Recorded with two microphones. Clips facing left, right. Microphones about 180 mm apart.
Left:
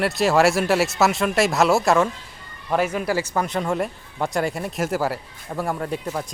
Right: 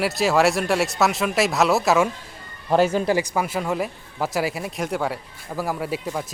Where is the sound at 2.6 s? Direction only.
30° right (ahead or behind).